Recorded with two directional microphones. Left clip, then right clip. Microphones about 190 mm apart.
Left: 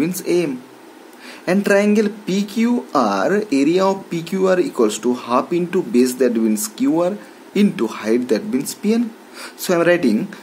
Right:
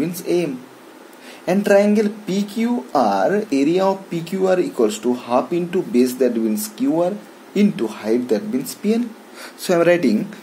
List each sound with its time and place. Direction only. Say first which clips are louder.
0.0 s speech: left 2 dB; 20° left (ahead or behind)